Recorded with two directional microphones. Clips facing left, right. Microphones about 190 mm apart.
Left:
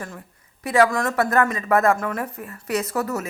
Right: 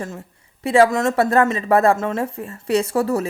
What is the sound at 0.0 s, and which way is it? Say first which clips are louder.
A woman's voice: right 5 dB; 25° right (ahead or behind).